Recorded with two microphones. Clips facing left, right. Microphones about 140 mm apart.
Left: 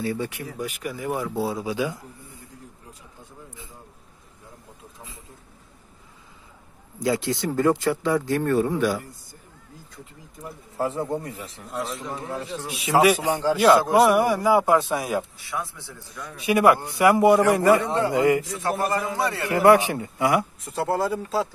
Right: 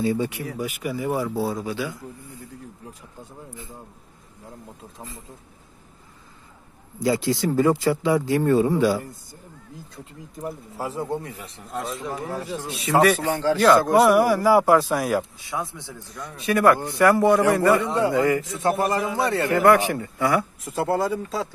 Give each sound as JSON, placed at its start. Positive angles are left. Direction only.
{"t": 0.0, "sound": "a man's voice", "side_deg": -15}
{"t": 1.6, "sound": "a man's voice", "side_deg": 15}
{"t": 7.0, "sound": "a man's voice", "side_deg": 0}
{"t": 10.8, "sound": "a man's voice", "side_deg": 0}
{"t": 12.6, "sound": "a man's voice", "side_deg": 5}
{"t": 15.3, "sound": "a man's voice", "side_deg": -20}
{"t": 16.4, "sound": "a man's voice", "side_deg": 15}
{"t": 18.4, "sound": "a man's voice", "side_deg": -25}
{"t": 19.4, "sound": "a man's voice", "side_deg": 20}
{"t": 20.6, "sound": "a man's voice", "side_deg": 0}